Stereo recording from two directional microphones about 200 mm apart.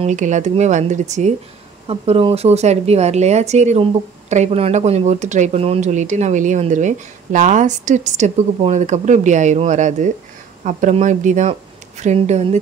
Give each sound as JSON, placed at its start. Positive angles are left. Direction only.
{"t": 0.0, "sound": "a woman's voice", "side_deg": -35}